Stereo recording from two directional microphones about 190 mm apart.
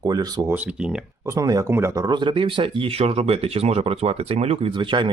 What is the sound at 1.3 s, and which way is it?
Speech, 20° right (ahead or behind).